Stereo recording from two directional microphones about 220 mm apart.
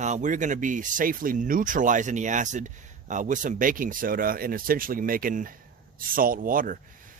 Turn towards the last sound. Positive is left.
turn(degrees=-40)  # may be behind; listen again after turning